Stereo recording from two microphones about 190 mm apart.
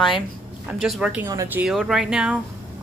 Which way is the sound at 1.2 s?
15° right (ahead or behind).